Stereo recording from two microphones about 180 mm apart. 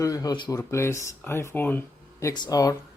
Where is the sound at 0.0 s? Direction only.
20° left (ahead or behind).